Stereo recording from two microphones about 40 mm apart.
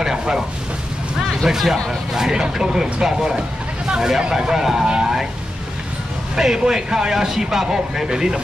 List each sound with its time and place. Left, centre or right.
0.0 s a sound: centre
1.4 s speech: centre
6.3 s speech: centre